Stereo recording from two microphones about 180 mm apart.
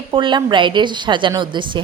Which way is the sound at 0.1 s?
25° right (ahead or behind).